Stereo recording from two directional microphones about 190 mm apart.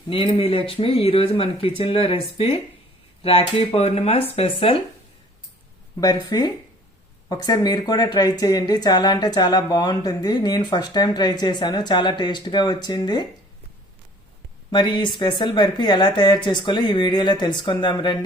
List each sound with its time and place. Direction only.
0.1 s speech: 30° left (ahead or behind)
6.3 s speech: 20° left (ahead or behind)
14.7 s speech: 25° left (ahead or behind)